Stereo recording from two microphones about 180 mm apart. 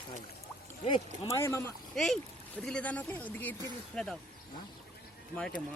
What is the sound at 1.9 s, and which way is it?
Speech, centre (ahead or behind).